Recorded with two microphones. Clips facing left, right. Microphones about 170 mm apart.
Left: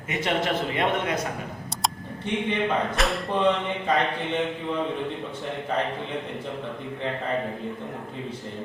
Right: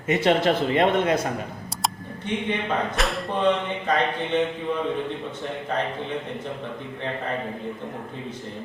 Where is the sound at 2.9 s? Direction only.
Centre (ahead or behind).